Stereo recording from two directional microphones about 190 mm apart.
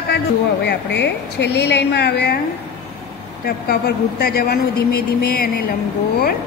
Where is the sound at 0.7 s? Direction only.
65° left (ahead or behind).